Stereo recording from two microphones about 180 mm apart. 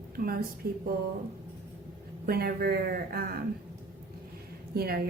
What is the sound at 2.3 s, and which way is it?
A woman's voice, 55° right (ahead or behind).